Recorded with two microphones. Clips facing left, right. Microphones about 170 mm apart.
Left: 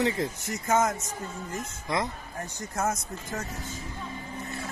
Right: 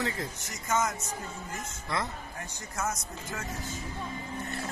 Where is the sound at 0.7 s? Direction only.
55° left (ahead or behind).